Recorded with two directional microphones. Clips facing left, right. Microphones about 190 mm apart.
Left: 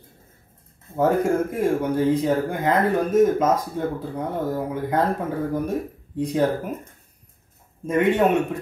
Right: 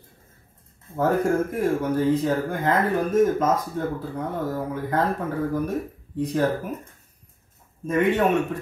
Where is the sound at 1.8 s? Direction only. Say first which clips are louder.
Left 1 dB; 15° left (ahead or behind).